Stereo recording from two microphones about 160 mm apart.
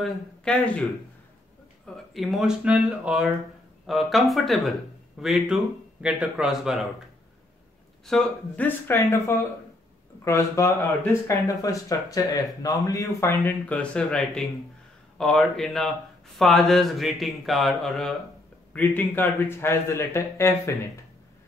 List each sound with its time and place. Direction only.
0.0 s speech: 5° left (ahead or behind)
2.1 s speech: centre (ahead or behind)
8.0 s a man's voice: 5° left (ahead or behind)
10.2 s a man's voice: 20° left (ahead or behind)